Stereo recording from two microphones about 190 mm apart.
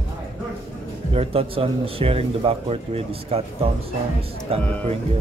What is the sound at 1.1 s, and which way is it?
Speech, 30° right (ahead or behind).